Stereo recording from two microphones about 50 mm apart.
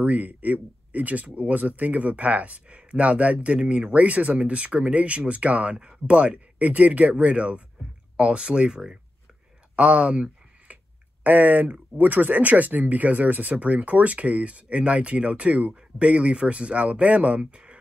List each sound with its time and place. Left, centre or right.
0.0 s speech: right; by 8.9 s centre
9.8 s a sound: right
11.2 s speech: right